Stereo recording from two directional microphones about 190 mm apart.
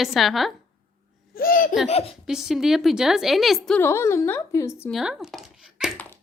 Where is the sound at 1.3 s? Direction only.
50° left (ahead or behind).